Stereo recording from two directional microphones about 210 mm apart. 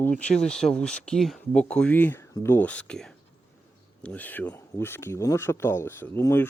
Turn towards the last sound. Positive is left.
turn(degrees=10)  # may be behind; listen again after turning